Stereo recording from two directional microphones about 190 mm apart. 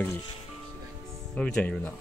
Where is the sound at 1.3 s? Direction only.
5° left (ahead or behind).